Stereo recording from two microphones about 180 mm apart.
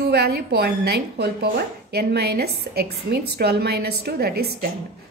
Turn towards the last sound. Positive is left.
turn(degrees=-60)  # may be behind; listen again after turning